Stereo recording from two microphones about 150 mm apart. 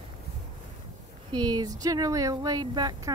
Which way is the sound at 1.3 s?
25° right (ahead or behind).